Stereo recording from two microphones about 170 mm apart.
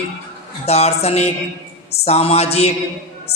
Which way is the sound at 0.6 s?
40° left (ahead or behind).